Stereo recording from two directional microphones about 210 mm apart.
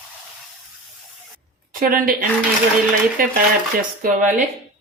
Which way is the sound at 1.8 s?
40° right (ahead or behind).